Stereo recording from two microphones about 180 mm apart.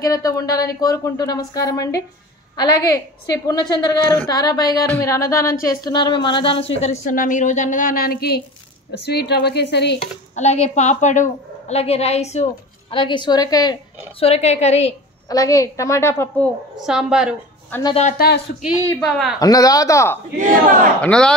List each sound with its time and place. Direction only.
0.0 s a woman's voice: 20° left (ahead or behind)
6.8 s a woman's voice: 45° left (ahead or behind); by 9.9 s 70° left (ahead or behind)
10.3 s a woman's voice: 40° left (ahead or behind)
12.9 s speech: 25° left (ahead or behind)
14.2 s a woman's voice: 35° left (ahead or behind)
15.2 s a woman's voice: 20° left (ahead or behind)
16.7 s a woman's voice: 5° right (ahead or behind)
18.1 s speech: 60° left (ahead or behind)
18.9 s a woman's voice: 5° left (ahead or behind)
19.4 s speech: 20° left (ahead or behind)
21.0 s a woman's voice: 5° left (ahead or behind)